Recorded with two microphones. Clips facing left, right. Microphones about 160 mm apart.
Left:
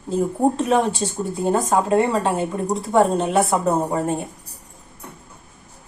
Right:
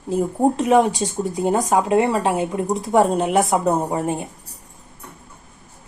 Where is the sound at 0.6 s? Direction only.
15° right (ahead or behind).